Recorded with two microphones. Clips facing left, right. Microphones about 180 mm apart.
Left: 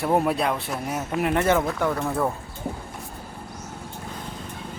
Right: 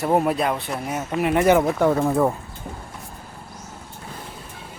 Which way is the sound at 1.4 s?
15° right (ahead or behind).